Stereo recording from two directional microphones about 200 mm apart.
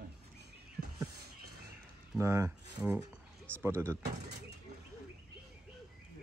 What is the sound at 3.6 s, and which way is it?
Speech, 15° right (ahead or behind).